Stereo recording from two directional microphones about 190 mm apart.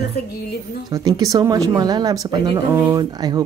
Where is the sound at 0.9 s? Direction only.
20° right (ahead or behind).